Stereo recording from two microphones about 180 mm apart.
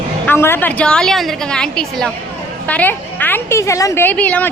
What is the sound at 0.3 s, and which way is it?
A woman's voice, 10° left (ahead or behind).